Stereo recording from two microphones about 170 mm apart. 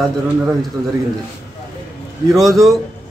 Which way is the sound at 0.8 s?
15° right (ahead or behind).